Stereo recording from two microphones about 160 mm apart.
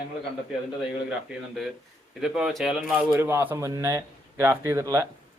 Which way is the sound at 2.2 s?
5° right (ahead or behind).